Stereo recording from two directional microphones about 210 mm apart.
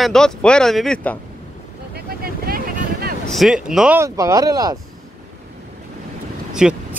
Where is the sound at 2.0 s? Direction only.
45° right (ahead or behind).